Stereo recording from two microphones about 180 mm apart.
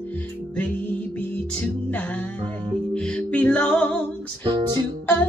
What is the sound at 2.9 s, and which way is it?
Music, 5° left (ahead or behind).